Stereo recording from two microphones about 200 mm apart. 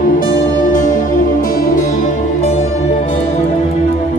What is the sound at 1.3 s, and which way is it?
Music, 45° left (ahead or behind).